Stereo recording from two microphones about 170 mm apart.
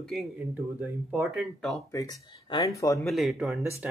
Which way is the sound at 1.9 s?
20° left (ahead or behind).